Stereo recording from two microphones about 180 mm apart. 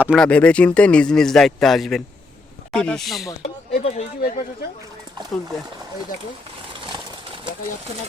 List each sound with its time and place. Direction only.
0.0 s a man's voice: 5° right (ahead or behind)
0.3 s a man's voice: 5° left (ahead or behind)
3.4 s a sound: 35° left (ahead or behind)